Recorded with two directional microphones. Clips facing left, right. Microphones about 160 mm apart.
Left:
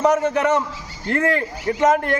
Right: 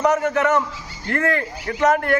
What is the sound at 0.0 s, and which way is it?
A man's voice, 30° left (ahead or behind).